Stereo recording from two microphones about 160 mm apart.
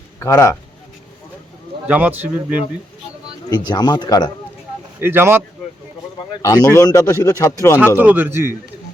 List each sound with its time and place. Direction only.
0.2 s speech: 15° left (ahead or behind)
1.9 s speech: 10° right (ahead or behind)
3.5 s speech: 25° left (ahead or behind)
4.9 s speech: 15° right (ahead or behind)
6.4 s speech: 20° left (ahead or behind)
7.9 s speech: 10° right (ahead or behind)